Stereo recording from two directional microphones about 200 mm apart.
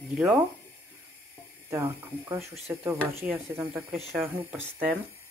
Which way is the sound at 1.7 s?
15° right (ahead or behind).